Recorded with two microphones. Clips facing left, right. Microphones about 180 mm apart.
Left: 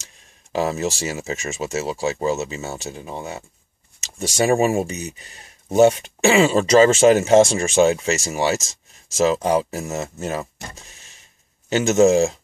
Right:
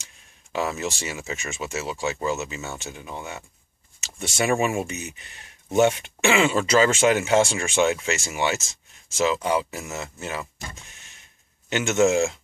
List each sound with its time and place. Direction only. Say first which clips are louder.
0.5 s speech: left 5 dB; 35° left (ahead or behind)